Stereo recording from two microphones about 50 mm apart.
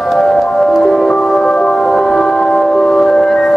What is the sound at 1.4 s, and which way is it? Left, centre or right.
Music, centre.